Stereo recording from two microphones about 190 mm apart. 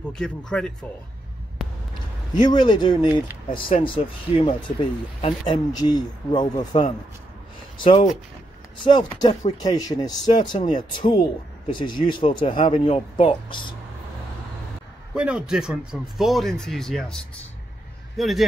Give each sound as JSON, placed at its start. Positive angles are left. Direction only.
{"t": 0.2, "sound": "speech", "side_deg": 5}
{"t": 2.3, "sound": "speech", "side_deg": 25}
{"t": 15.1, "sound": "speech", "side_deg": -5}